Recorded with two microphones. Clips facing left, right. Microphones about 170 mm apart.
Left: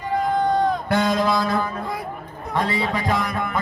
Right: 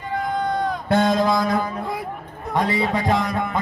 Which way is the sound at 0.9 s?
25° right (ahead or behind).